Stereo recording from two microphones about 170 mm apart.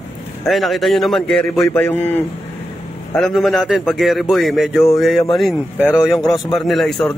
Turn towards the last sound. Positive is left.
turn(degrees=0)  # may be behind; listen again after turning